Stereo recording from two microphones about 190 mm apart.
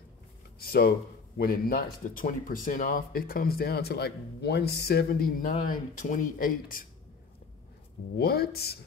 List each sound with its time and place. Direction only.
0.6 s speech: 55° left (ahead or behind)
8.2 s speech: 55° left (ahead or behind)